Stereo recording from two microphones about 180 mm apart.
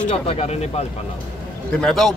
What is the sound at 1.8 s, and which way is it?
Speech, centre (ahead or behind).